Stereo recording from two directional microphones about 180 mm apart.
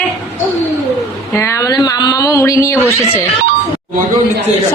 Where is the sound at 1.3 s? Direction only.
15° left (ahead or behind).